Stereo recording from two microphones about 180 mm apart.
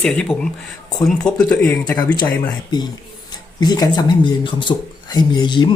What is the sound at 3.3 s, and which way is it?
Speech, 20° left (ahead or behind).